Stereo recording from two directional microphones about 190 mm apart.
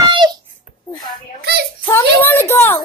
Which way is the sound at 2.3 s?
10° left (ahead or behind).